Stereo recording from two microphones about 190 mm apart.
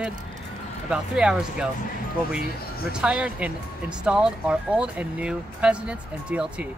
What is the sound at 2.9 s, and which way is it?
Speech, 5° right (ahead or behind).